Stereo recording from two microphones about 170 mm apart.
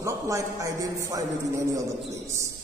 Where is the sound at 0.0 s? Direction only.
20° right (ahead or behind).